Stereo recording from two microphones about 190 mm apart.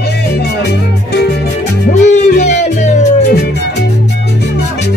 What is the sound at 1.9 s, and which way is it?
Music, 40° left (ahead or behind).